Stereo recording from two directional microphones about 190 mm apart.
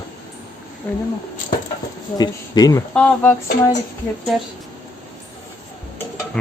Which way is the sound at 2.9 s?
5° left (ahead or behind).